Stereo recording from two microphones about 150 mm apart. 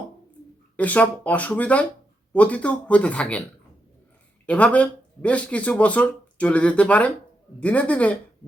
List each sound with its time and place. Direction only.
0.8 s speech: 10° left (ahead or behind)
4.4 s speech: 10° left (ahead or behind)